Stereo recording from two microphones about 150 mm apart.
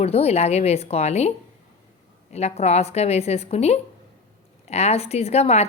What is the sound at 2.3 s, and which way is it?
A woman's voice, 45° left (ahead or behind).